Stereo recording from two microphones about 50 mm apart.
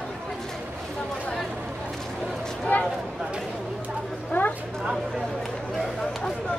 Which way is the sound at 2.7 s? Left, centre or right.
Left.